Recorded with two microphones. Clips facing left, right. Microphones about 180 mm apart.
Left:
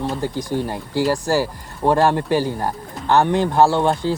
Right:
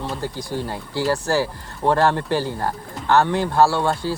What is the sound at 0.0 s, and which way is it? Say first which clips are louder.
Speech: left 4 dB; 15° left (ahead or behind).